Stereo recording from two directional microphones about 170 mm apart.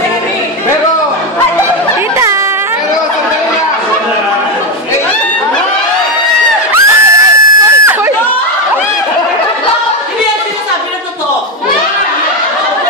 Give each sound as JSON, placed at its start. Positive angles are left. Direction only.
{"t": 6.7, "sound": "crowd", "side_deg": -15}